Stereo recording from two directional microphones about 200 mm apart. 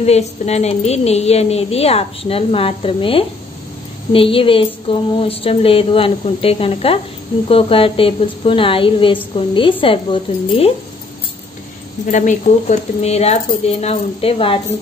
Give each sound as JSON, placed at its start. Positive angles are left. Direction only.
{"t": 0.0, "sound": "a woman's voice", "side_deg": 30}
{"t": 12.1, "sound": "a woman's voice", "side_deg": 40}